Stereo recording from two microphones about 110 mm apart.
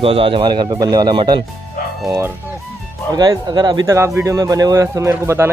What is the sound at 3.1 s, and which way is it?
Speech, 35° right (ahead or behind).